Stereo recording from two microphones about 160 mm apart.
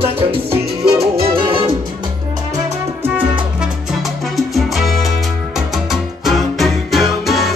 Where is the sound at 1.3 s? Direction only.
35° right (ahead or behind).